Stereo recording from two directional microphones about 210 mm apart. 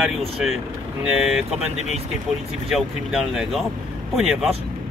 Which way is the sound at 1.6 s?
30° right (ahead or behind).